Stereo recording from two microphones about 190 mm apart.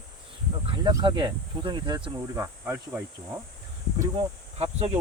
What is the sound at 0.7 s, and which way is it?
Speech, 20° right (ahead or behind).